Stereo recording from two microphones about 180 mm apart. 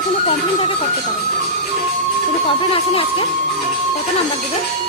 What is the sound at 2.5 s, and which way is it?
Speech, 30° left (ahead or behind).